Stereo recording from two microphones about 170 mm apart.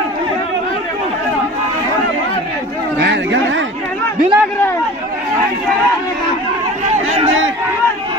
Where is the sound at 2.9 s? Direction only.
85° right.